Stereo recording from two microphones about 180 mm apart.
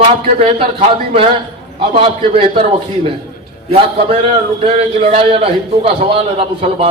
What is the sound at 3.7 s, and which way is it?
A man's voice, 35° right (ahead or behind).